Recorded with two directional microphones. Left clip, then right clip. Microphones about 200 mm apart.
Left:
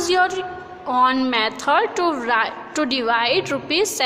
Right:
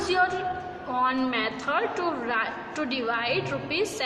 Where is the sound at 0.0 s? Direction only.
50° left (ahead or behind).